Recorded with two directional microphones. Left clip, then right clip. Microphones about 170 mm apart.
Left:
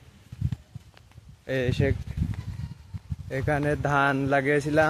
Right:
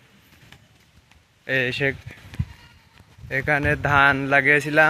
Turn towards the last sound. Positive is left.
turn(degrees=0)  # may be behind; listen again after turning